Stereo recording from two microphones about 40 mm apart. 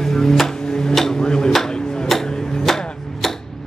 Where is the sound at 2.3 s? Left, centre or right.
Centre.